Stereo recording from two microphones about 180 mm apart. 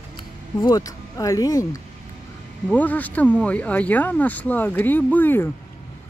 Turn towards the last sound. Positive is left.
turn(degrees=10)  # may be behind; listen again after turning